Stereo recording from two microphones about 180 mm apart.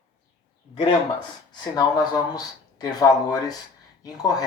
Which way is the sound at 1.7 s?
20° left (ahead or behind).